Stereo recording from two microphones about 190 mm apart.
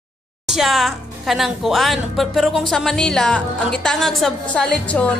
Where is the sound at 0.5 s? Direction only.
Centre (ahead or behind).